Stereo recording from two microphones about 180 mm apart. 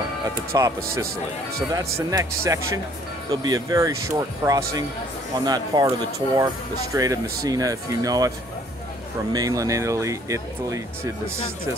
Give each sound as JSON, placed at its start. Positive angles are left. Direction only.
{"t": 0.5, "sound": "speech", "side_deg": -15}
{"t": 9.3, "sound": "speech", "side_deg": -20}